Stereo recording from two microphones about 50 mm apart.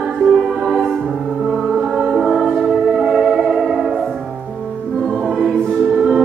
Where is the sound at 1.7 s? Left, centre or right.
Centre.